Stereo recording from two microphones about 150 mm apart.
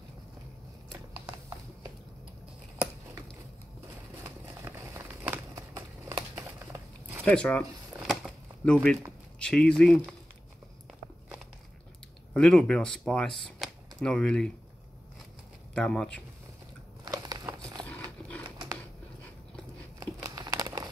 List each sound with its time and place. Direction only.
4.2 s crumpling: 20° right (ahead or behind)
6.3 s a sound: 10° right (ahead or behind)
7.2 s speech: 10° left (ahead or behind)
8.1 s a sound: centre (ahead or behind)
9.4 s speech: 5° left (ahead or behind)
12.4 s speech: 5° left (ahead or behind)
15.7 s speech: 5° left (ahead or behind)
17.0 s a sound: 25° right (ahead or behind)
20.2 s crumpling: 20° right (ahead or behind)